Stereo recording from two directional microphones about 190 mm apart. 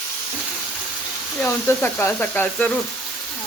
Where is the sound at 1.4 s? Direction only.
10° left (ahead or behind).